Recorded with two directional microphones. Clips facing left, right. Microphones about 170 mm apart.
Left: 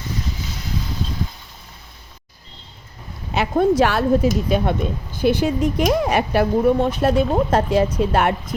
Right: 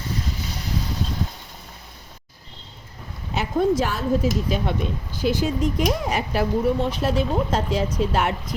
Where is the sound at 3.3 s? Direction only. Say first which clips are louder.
Left 4 dB; 60° left (ahead or behind).